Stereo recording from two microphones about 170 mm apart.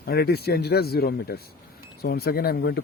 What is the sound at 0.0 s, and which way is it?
Speech, 65° left (ahead or behind).